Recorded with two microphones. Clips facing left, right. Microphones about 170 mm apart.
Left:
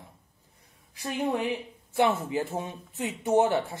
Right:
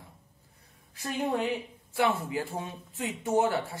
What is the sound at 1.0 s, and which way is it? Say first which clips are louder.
A woman's voice: left 1 dB; 15° left (ahead or behind).